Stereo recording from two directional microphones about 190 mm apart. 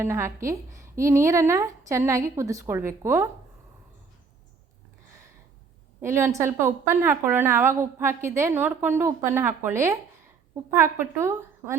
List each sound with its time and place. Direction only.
0.0 s a woman's voice: 15° right (ahead or behind)
6.0 s a woman's voice: 15° right (ahead or behind)